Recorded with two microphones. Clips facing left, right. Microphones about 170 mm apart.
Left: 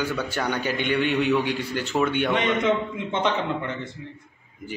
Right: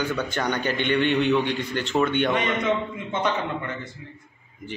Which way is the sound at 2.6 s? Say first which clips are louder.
Left 2 dB; 20° left (ahead or behind).